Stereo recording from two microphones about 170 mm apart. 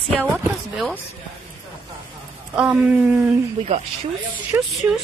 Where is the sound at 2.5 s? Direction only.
5° right (ahead or behind).